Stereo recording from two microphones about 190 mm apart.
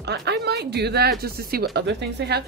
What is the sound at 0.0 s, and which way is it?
Speech, 60° right (ahead or behind).